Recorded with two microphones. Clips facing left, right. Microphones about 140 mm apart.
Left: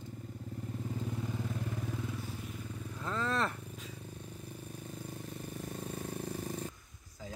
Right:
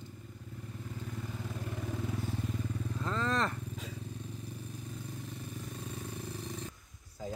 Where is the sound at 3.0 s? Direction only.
5° left (ahead or behind).